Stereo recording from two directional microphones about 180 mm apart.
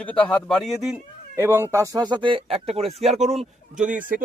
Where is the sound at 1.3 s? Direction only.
15° right (ahead or behind).